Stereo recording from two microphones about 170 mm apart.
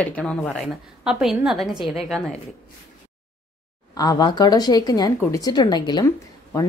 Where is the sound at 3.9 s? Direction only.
20° left (ahead or behind).